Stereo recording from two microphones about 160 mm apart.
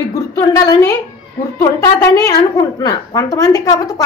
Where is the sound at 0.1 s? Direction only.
20° left (ahead or behind).